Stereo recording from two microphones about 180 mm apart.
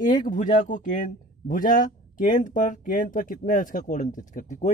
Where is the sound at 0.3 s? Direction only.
45° left (ahead or behind).